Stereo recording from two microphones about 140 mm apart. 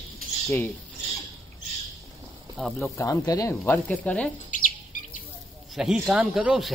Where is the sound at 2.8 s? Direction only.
20° left (ahead or behind).